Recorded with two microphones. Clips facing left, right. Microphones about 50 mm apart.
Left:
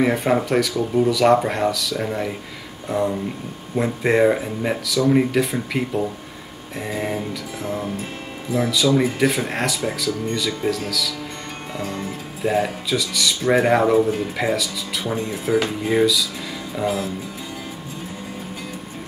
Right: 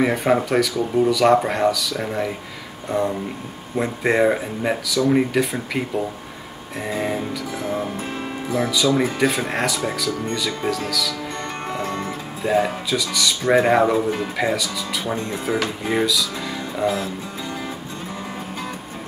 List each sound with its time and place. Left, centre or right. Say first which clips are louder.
0.0 s speech: even; centre
7.6 s speech: right 1 dB; right
8.6 s speech: left 1 dB; centre
11.8 s speech: even; right
12.4 s speech: right 1 dB; centre